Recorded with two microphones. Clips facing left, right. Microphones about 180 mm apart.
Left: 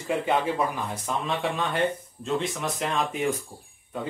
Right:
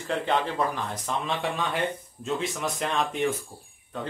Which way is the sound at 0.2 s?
5° left (ahead or behind).